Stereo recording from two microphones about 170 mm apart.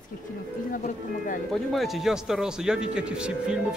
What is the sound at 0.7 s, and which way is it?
Speech, 50° left (ahead or behind).